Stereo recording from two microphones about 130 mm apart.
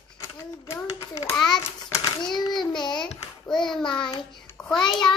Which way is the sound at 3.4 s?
5° left (ahead or behind).